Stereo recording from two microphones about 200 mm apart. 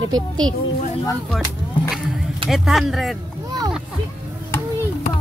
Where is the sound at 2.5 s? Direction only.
Centre (ahead or behind).